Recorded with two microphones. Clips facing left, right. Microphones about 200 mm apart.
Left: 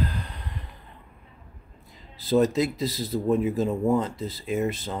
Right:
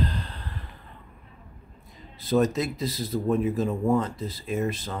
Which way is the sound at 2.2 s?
25° left (ahead or behind).